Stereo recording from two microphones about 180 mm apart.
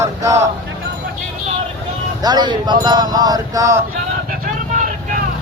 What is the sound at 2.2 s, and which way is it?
Speech, 25° right (ahead or behind).